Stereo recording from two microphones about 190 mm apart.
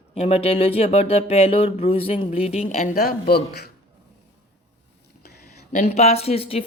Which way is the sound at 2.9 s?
55° left (ahead or behind).